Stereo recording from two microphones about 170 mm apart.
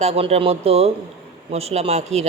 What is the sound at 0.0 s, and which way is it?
A man's voice, 35° right (ahead or behind).